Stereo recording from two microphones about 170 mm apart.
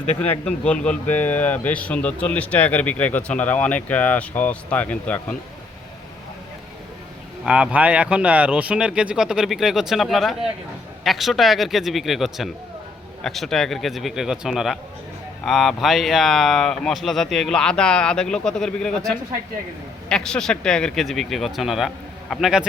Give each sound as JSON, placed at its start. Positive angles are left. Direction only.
{"t": 0.2, "sound": "a man's voice", "side_deg": 5}
{"t": 7.4, "sound": "speech", "side_deg": -5}